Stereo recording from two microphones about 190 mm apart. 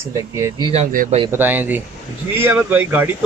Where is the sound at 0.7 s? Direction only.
40° right (ahead or behind).